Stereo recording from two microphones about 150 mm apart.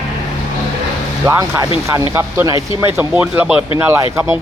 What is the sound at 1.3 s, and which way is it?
Speech, 20° right (ahead or behind).